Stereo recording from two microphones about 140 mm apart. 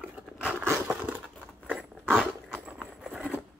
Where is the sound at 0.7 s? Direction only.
10° right (ahead or behind).